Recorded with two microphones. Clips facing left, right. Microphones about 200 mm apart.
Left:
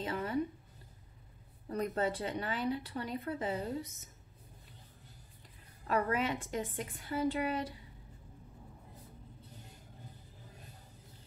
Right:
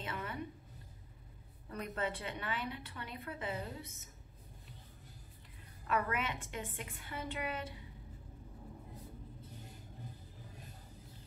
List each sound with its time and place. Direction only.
0.0 s a sound: 35° left (ahead or behind)
1.7 s speech: 35° left (ahead or behind)
5.9 s speech: 35° left (ahead or behind)